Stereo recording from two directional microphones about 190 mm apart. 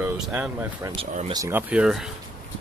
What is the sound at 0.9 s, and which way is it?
Speech, 35° right (ahead or behind).